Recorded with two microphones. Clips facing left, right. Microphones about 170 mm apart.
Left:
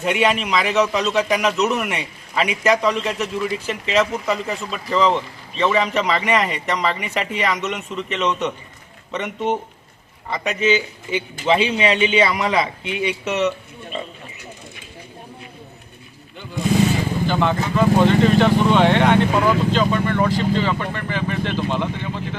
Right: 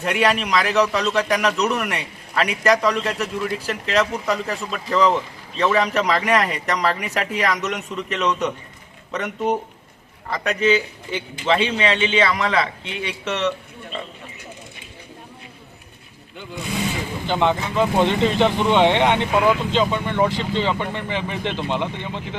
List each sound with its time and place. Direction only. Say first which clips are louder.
0.0 s a man's voice: left 1 dB; 5° left (ahead or behind)
17.2 s speech: right 2 dB; 20° right (ahead or behind)